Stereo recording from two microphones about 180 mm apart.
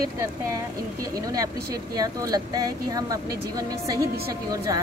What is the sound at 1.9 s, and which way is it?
Speech, 20° right (ahead or behind).